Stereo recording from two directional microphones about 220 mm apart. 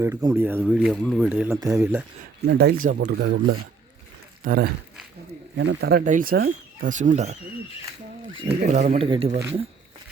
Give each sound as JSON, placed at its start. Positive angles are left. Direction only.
{"t": 0.0, "sound": "speech", "side_deg": -15}
{"t": 2.5, "sound": "speech", "side_deg": -45}
{"t": 3.0, "sound": "speech", "side_deg": -60}
{"t": 4.4, "sound": "speech", "side_deg": -40}
{"t": 8.4, "sound": "speech", "side_deg": -30}